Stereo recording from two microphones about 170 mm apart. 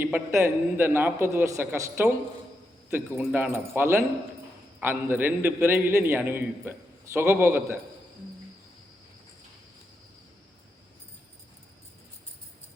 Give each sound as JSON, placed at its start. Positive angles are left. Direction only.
{"t": 0.0, "sound": "a man's voice", "side_deg": -15}